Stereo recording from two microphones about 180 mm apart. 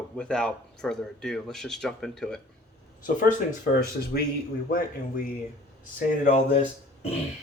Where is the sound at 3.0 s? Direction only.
45° left (ahead or behind).